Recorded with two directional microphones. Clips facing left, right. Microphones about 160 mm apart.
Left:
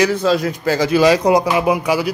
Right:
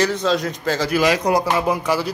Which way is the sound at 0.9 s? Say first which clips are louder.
Left 5 dB; 30° left (ahead or behind).